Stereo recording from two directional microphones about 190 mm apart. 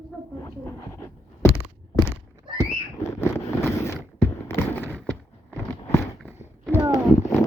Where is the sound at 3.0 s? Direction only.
15° left (ahead or behind).